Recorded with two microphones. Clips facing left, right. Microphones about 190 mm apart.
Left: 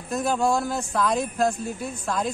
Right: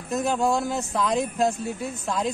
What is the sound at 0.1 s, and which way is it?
Speech, 20° right (ahead or behind).